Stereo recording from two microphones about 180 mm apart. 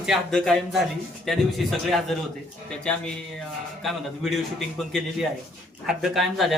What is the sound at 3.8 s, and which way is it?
Speech, centre (ahead or behind).